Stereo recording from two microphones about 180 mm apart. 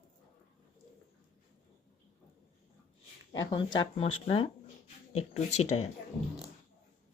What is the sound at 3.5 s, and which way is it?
Speech, 25° left (ahead or behind).